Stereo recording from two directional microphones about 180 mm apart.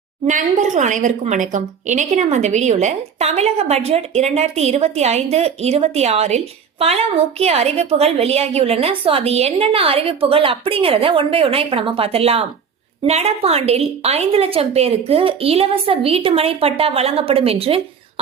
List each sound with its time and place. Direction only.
0.3 s a woman's voice: 45° right (ahead or behind)